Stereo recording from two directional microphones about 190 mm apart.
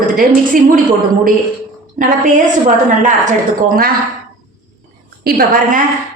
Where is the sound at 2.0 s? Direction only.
45° right (ahead or behind).